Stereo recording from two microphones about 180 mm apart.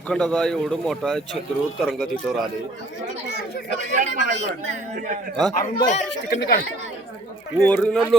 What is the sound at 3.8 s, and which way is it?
Speech, 45° right (ahead or behind).